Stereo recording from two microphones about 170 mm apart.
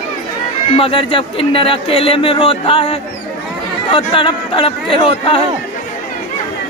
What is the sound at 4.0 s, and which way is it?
Speech, 30° left (ahead or behind).